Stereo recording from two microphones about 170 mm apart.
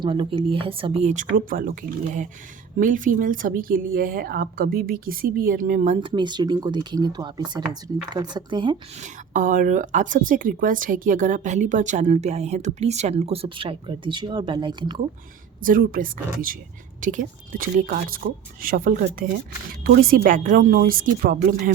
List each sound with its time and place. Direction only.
0.0 s speech: 30° right (ahead or behind)
9.3 s speech: 50° right (ahead or behind); by 15.0 s 25° right (ahead or behind)
15.6 s a woman's voice: 55° right (ahead or behind)
19.8 s a woman's voice: 60° right (ahead or behind)